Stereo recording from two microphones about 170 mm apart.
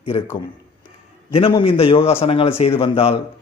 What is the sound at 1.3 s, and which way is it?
A man's voice, 35° left (ahead or behind).